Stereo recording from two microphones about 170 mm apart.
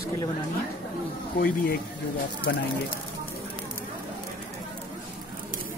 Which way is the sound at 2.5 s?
85° left.